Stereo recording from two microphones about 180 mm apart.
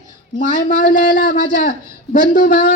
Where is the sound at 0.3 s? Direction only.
45° left (ahead or behind).